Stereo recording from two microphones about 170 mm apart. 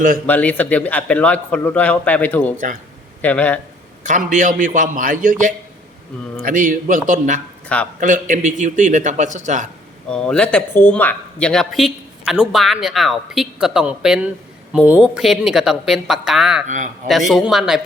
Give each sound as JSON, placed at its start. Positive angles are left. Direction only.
{"t": 0.3, "sound": "a man's voice", "side_deg": 10}
{"t": 4.0, "sound": "a man's voice", "side_deg": -45}
{"t": 10.1, "sound": "speech", "side_deg": 5}
{"t": 16.6, "sound": "a man's voice", "side_deg": -45}
{"t": 17.1, "sound": "speech", "side_deg": 0}